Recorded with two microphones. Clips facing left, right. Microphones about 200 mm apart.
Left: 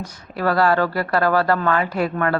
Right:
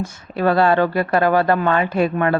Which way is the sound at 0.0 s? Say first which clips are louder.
Right 4 dB; 25° right (ahead or behind).